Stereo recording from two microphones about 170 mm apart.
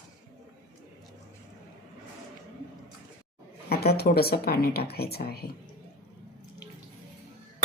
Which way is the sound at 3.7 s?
65° left (ahead or behind).